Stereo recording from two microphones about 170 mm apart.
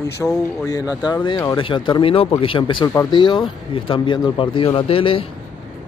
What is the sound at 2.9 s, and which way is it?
Speech, 15° left (ahead or behind).